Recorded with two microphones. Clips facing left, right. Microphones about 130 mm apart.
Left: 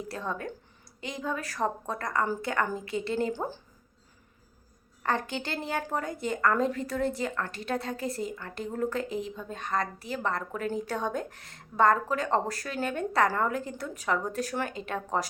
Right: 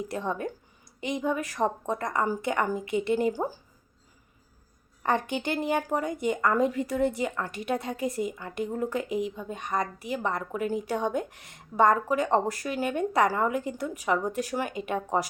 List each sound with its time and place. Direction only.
0.0 s speech: 15° right (ahead or behind)
5.0 s speech: 15° right (ahead or behind)